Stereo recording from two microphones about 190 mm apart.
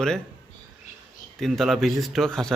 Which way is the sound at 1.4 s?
Centre (ahead or behind).